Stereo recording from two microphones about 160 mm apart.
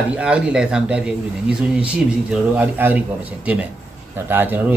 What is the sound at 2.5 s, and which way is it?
Speech, 10° right (ahead or behind).